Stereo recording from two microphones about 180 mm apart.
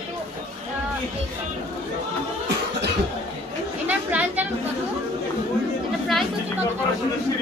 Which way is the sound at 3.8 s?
10° right (ahead or behind).